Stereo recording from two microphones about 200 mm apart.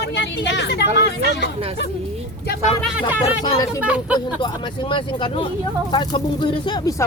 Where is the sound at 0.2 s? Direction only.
60° left (ahead or behind).